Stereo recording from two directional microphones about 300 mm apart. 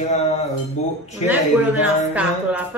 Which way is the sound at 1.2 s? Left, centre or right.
Centre.